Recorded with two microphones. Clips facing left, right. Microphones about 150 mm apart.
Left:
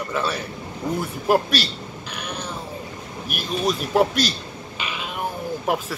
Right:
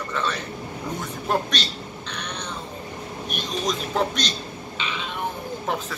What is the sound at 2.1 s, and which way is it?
Cat, 5° left (ahead or behind).